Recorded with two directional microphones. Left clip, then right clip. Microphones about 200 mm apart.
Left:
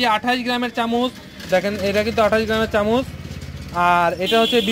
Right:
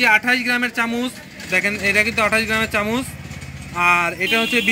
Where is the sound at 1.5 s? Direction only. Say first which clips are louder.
Right 1 dB; 25° left (ahead or behind).